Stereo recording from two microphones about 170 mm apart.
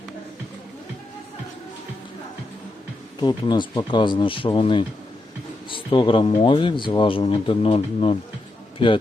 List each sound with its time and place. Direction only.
3.2 s speech: 25° left (ahead or behind)